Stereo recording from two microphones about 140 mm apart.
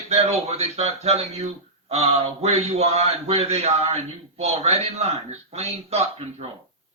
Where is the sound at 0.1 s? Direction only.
50° right (ahead or behind).